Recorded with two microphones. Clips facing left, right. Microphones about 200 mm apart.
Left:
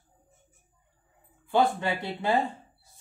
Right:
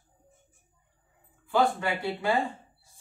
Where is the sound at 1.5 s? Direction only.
25° left (ahead or behind).